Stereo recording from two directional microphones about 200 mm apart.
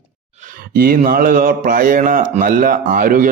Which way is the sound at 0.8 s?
45° right (ahead or behind).